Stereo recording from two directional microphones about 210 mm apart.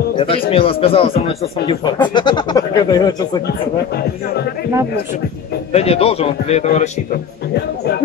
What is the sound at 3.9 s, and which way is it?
Speech, 50° left (ahead or behind).